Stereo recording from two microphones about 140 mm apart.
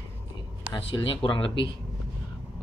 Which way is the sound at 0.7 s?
40° left (ahead or behind).